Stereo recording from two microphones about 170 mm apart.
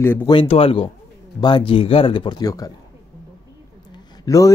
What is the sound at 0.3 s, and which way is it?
Speech, 35° left (ahead or behind).